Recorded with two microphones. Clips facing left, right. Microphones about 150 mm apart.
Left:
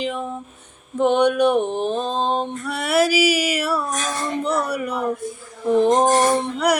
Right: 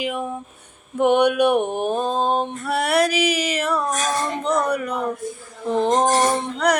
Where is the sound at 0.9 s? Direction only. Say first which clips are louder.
Even; 10° right (ahead or behind).